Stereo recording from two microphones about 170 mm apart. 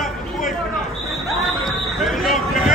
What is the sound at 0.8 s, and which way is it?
Basketball bounce, centre (ahead or behind).